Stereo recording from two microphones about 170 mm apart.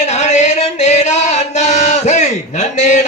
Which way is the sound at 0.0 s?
40° left (ahead or behind).